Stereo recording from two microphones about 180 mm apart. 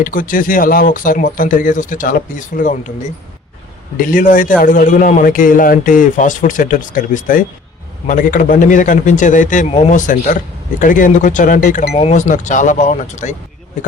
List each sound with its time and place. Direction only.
0.0 s a man's voice: 50° left (ahead or behind)
3.9 s a man's voice: 50° left (ahead or behind)
11.9 s a man's voice: 35° left (ahead or behind)